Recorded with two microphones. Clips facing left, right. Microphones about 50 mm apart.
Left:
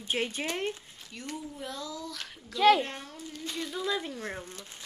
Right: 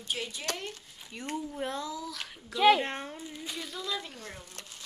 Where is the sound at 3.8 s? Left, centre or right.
Left.